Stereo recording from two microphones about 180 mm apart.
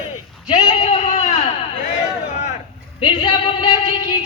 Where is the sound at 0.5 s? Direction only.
40° left (ahead or behind).